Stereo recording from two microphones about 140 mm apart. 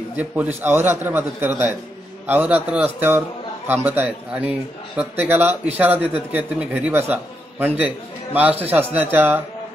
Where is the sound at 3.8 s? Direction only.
15° right (ahead or behind).